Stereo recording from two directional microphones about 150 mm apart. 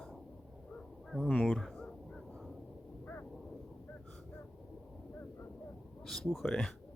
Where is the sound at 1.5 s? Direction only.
5° left (ahead or behind).